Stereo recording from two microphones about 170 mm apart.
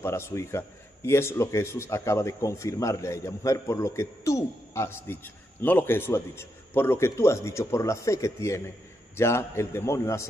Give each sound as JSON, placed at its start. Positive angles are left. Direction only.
{"t": 0.0, "sound": "a man's voice", "side_deg": 15}